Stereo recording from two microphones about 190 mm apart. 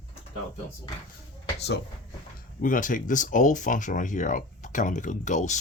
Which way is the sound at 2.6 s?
45° left (ahead or behind).